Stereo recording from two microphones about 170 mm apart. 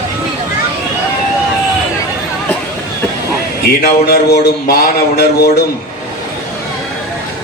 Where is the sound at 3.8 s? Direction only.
65° left (ahead or behind).